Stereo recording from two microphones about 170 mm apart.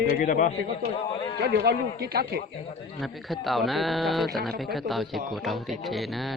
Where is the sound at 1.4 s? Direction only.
70° right (ahead or behind).